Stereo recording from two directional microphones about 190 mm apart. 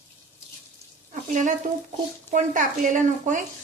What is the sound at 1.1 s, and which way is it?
Frying, 40° right (ahead or behind).